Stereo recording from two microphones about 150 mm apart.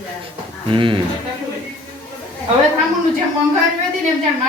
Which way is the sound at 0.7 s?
35° right (ahead or behind).